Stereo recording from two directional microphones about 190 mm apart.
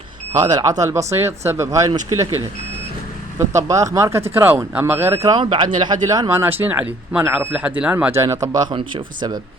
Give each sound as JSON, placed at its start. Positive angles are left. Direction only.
{"t": 0.5, "sound": "speech", "side_deg": -20}
{"t": 3.3, "sound": "speech", "side_deg": -15}